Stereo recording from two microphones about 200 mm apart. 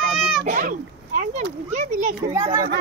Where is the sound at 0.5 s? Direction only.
40° right (ahead or behind).